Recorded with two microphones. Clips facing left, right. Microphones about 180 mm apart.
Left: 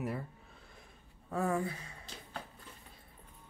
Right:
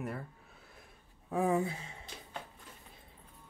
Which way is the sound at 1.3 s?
15° right (ahead or behind).